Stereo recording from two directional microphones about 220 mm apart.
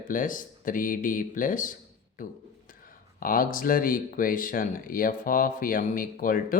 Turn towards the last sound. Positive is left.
turn(degrees=40)  # may be behind; listen again after turning